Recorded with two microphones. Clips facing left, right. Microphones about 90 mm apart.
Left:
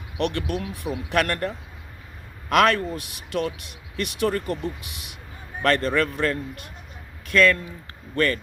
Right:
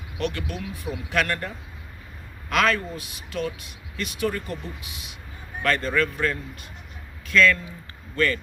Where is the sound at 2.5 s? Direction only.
65° left (ahead or behind).